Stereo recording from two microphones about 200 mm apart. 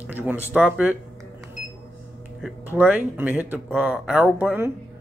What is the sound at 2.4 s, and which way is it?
Speech, 10° right (ahead or behind).